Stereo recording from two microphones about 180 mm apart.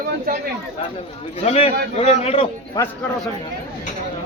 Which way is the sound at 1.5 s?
35° left (ahead or behind).